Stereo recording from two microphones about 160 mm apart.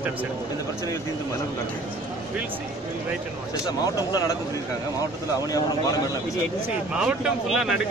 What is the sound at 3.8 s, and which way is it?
Speech, 25° left (ahead or behind).